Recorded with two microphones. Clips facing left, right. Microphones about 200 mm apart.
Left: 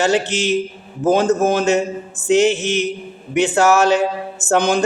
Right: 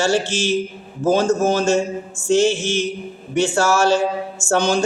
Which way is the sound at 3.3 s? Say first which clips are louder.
Left 3 dB; 20° left (ahead or behind).